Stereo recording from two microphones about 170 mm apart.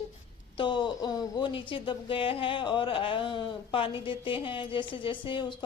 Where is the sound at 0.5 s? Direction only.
30° left (ahead or behind).